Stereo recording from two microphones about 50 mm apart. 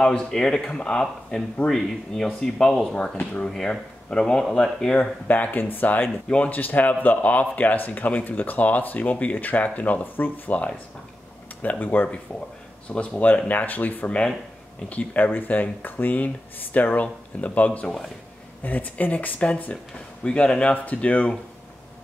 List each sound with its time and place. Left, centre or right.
0.0 s speech: centre
5.3 s speech: left
6.2 s speech: left
6.5 s speech: left
11.8 s speech: left
12.8 s speech: left
15.2 s speech: left